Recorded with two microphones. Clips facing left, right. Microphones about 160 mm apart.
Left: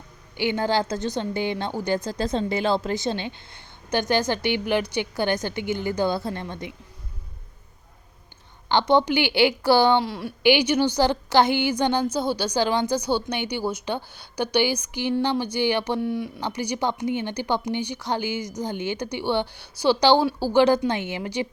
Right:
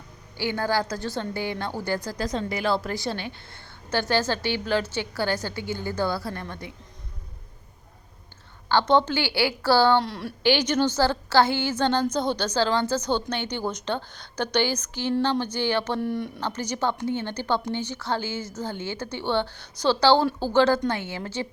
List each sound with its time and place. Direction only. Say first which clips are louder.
0.3 s a woman's voice: left 3 dB; 20° left (ahead or behind)
8.7 s a woman's voice: left 1 dB; 15° left (ahead or behind)
10.0 s speech: left 2 dB; centre (ahead or behind)
10.4 s a woman's voice: left 3 dB; 15° left (ahead or behind)
16.0 s speech: left 1 dB; centre (ahead or behind)
16.4 s a woman's voice: left 1 dB; 10° left (ahead or behind)